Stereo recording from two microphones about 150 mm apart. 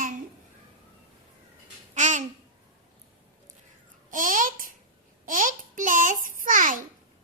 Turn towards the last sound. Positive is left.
turn(degrees=-60)  # may be behind; listen again after turning